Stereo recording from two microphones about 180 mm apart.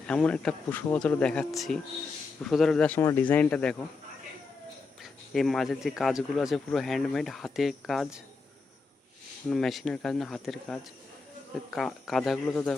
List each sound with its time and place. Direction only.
0.1 s speech: 5° left (ahead or behind)
5.3 s speech: centre (ahead or behind)
9.5 s speech: centre (ahead or behind)